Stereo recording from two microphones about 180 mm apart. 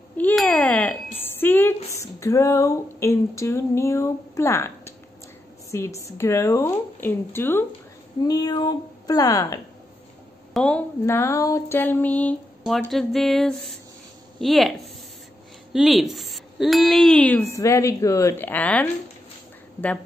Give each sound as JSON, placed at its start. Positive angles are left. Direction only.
{"t": 0.2, "sound": "a sound", "side_deg": 5}
{"t": 2.0, "sound": "speech", "side_deg": 15}
{"t": 10.5, "sound": "speech", "side_deg": 5}